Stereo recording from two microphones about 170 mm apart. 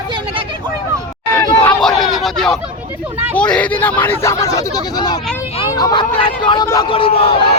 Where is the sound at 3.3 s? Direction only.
5° left (ahead or behind); by 7.4 s 35° left (ahead or behind).